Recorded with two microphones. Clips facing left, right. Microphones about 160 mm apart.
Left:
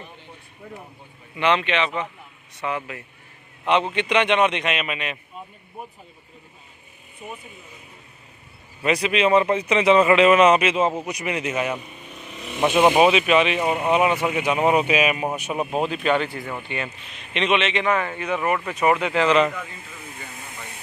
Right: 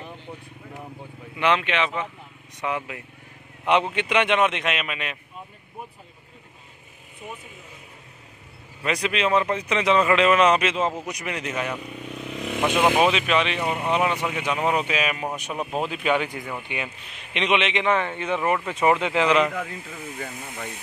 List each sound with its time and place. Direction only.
1.3 s a man's voice: 5° right (ahead or behind)
8.8 s a man's voice: 5° left (ahead or behind)
11.8 s vehicle: 90° right
13.0 s speech: 10° left (ahead or behind)
15.9 s a man's voice: 10° right (ahead or behind); by 19.2 s 25° right (ahead or behind)
19.2 s a man's voice: 10° right (ahead or behind)